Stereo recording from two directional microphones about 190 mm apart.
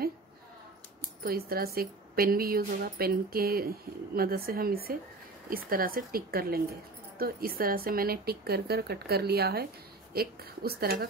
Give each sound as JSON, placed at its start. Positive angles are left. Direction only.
{"t": 1.2, "sound": "a woman's voice", "side_deg": -55}